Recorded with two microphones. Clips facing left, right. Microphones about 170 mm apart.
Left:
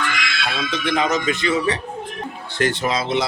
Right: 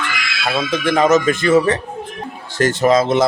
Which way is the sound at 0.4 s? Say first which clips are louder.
Right 7 dB; 50° right (ahead or behind).